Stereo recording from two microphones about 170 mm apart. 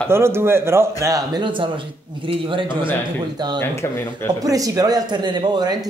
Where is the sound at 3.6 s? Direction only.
15° left (ahead or behind).